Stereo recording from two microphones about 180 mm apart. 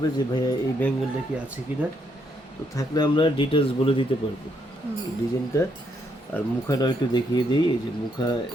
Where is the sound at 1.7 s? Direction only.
10° right (ahead or behind).